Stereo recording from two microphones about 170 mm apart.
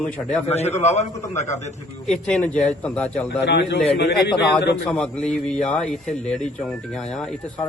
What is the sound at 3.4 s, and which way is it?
A man's voice, 90° left.